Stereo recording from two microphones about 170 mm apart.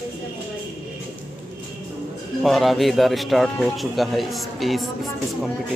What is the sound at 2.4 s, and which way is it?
Speech, centre (ahead or behind).